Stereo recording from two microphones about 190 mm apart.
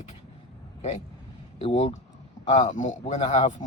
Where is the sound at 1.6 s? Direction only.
30° left (ahead or behind).